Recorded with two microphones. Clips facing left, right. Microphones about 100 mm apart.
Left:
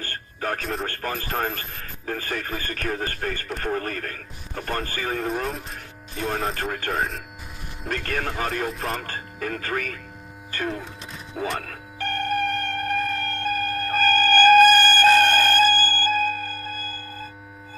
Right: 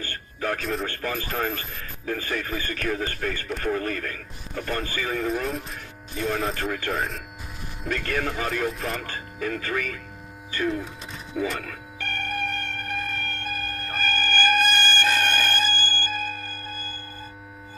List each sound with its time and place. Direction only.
0.0 s a sound: 45° left (ahead or behind)
0.8 s speech: 45° left (ahead or behind)
11.3 s music: 50° left (ahead or behind)